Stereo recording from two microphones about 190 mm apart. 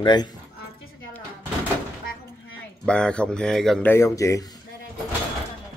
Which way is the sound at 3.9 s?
15° left (ahead or behind).